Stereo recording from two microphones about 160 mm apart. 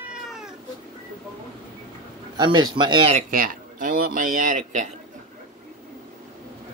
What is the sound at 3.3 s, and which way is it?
Speech, 60° right (ahead or behind).